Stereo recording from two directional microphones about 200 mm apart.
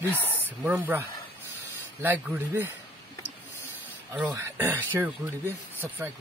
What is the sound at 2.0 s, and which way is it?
Speech, 10° right (ahead or behind).